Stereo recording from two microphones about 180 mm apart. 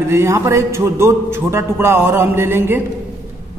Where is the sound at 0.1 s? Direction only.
15° right (ahead or behind).